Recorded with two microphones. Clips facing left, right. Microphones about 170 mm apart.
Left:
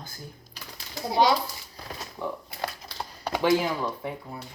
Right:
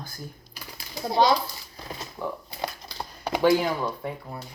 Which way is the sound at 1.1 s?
10° left (ahead or behind).